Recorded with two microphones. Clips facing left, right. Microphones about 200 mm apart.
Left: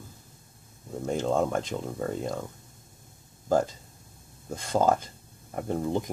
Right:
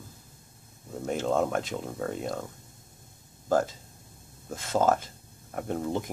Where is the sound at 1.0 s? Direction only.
5° right (ahead or behind).